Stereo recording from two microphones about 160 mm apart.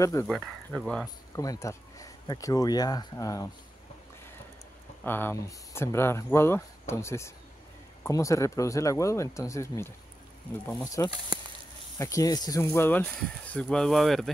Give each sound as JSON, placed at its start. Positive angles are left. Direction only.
{"t": 0.0, "sound": "speech", "side_deg": 20}
{"t": 0.3, "sound": "speech", "side_deg": 5}
{"t": 1.3, "sound": "speech", "side_deg": 20}
{"t": 5.0, "sound": "speech", "side_deg": 10}